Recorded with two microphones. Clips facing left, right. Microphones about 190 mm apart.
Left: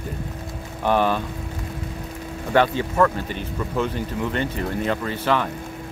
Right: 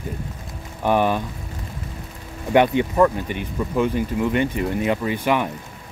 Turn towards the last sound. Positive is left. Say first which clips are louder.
# right 2 dB
turn(degrees=-15)  # may be behind; listen again after turning